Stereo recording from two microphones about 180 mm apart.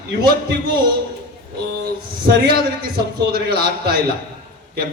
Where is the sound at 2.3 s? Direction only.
60° right (ahead or behind).